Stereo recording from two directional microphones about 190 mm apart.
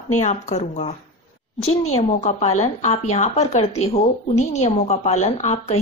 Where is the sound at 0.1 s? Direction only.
40° left (ahead or behind).